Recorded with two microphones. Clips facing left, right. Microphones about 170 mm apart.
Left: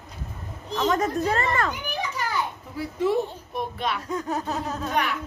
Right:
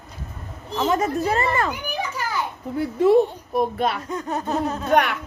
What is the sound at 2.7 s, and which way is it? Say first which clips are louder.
A child's voice: right 8 dB; 60° right (ahead or behind).